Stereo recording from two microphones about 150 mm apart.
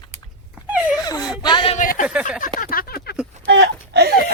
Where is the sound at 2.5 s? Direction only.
75° left (ahead or behind).